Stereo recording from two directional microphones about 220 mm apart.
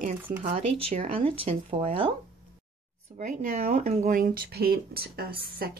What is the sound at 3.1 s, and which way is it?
Speech, 35° right (ahead or behind).